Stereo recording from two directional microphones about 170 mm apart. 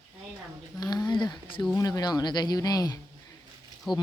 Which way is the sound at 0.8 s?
25° left (ahead or behind).